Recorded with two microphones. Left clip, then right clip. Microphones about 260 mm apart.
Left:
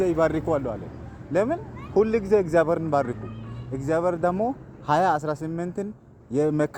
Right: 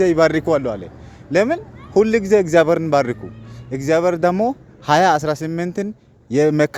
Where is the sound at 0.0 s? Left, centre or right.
Right.